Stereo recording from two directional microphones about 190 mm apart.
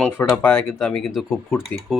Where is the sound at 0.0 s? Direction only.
10° left (ahead or behind).